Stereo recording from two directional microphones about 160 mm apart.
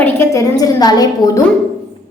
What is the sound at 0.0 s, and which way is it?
A woman's voice, 20° left (ahead or behind).